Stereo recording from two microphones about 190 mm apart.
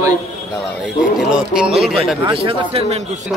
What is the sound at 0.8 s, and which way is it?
Speech, centre (ahead or behind).